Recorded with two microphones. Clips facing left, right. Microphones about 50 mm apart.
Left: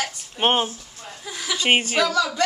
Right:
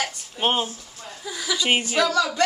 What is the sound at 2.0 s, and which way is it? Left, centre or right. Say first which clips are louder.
Speech: even; centre.